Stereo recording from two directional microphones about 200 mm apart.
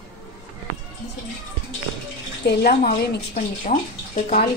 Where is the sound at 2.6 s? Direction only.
50° left (ahead or behind).